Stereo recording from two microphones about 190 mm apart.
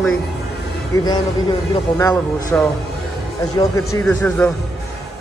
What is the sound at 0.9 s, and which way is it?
Speech, 20° left (ahead or behind).